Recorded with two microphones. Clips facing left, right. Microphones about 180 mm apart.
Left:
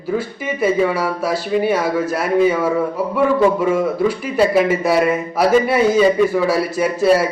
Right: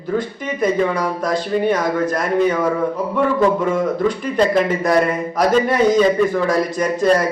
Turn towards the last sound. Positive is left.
turn(degrees=5)  # may be behind; listen again after turning